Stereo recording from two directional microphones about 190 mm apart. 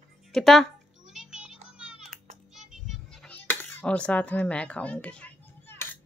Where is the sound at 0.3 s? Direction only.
Centre (ahead or behind).